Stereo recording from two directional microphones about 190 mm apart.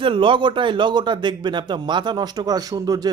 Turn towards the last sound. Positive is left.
turn(degrees=-20)  # may be behind; listen again after turning